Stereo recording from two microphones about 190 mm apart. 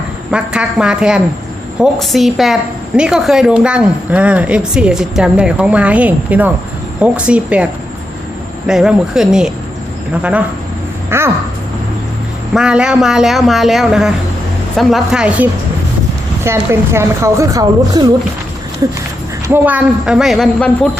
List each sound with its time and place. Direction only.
0.3 s a woman's voice: 5° right (ahead or behind)
11.1 s a woman's voice: 10° right (ahead or behind)
12.5 s a woman's voice: 5° right (ahead or behind)
19.5 s a woman's voice: 10° right (ahead or behind)